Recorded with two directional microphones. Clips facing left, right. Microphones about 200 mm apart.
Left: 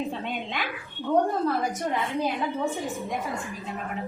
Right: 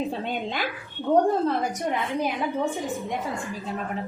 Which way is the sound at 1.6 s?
15° right (ahead or behind).